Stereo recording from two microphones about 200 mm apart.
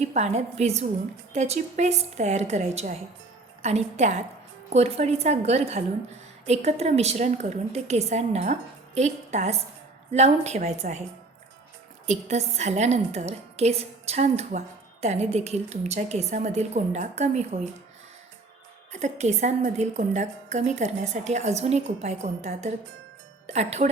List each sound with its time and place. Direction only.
0.0 s a woman's voice: 35° right (ahead or behind)
12.0 s a woman's voice: 35° right (ahead or behind)
18.9 s a woman's voice: 35° right (ahead or behind)